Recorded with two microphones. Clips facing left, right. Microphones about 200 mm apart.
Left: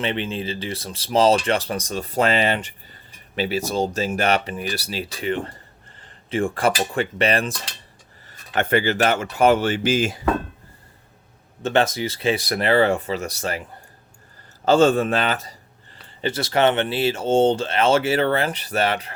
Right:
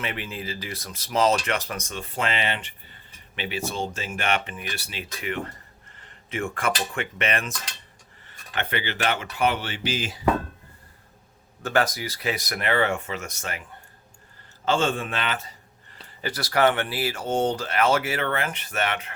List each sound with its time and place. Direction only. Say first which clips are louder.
0.0 s speech: left 7 dB; 30° left (ahead or behind)
6.0 s a sound: left 7 dB; 30° left (ahead or behind)
6.9 s speech: left 7 dB; 35° left (ahead or behind)
8.3 s speech: left 9 dB; 45° left (ahead or behind)
11.6 s speech: left 4 dB; 25° left (ahead or behind)
14.6 s speech: left 8 dB; 40° left (ahead or behind)
16.2 s speech: left 3 dB; 25° left (ahead or behind)